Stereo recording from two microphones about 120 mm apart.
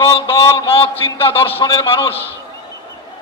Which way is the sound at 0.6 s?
50° left (ahead or behind).